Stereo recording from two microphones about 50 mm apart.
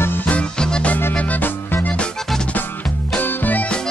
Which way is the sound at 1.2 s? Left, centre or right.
Left.